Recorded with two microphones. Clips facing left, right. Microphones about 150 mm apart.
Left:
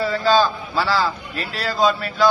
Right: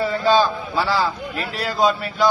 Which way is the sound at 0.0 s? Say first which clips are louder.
Even; 20° right (ahead or behind).